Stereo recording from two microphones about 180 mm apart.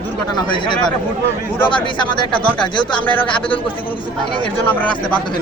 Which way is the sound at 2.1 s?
25° left (ahead or behind).